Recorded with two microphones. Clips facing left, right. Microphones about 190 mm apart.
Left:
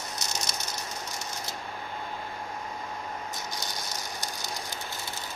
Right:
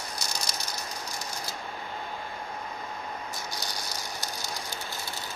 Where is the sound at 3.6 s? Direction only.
20° left (ahead or behind).